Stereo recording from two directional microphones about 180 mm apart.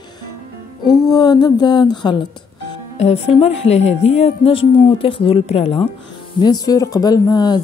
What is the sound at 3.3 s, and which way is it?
Speech, 35° left (ahead or behind).